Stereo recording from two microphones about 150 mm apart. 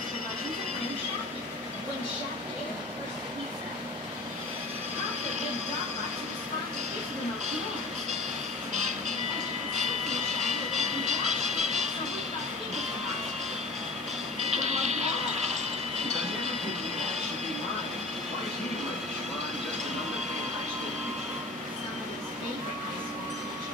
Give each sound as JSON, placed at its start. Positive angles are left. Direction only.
{"t": 10.0, "sound": "music", "side_deg": -50}
{"t": 14.4, "sound": "music", "side_deg": -50}